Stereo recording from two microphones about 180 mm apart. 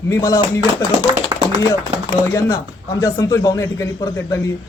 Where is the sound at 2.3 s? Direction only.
20° left (ahead or behind).